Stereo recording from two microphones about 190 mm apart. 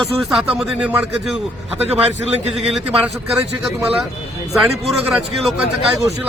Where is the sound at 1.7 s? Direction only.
35° right (ahead or behind).